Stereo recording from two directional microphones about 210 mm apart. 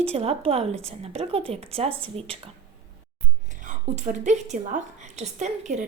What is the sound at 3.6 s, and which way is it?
A woman's voice, 35° right (ahead or behind).